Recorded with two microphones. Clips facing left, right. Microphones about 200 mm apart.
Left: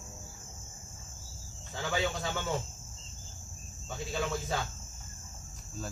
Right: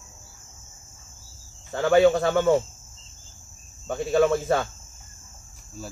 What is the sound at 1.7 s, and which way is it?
Speech, 60° right (ahead or behind).